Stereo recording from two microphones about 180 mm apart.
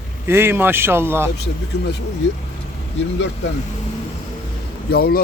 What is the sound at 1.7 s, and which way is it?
Speech, 70° left (ahead or behind).